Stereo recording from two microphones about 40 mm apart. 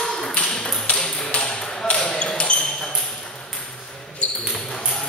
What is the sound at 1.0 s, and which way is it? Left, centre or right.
Ping, left.